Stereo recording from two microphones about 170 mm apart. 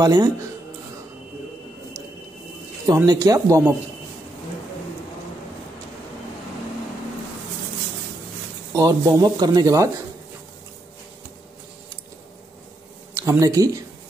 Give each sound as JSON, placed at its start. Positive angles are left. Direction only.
{"t": 0.0, "sound": "speech", "side_deg": -25}
{"t": 3.1, "sound": "speech", "side_deg": -20}
{"t": 8.7, "sound": "speech", "side_deg": -20}
{"t": 13.1, "sound": "speech", "side_deg": -15}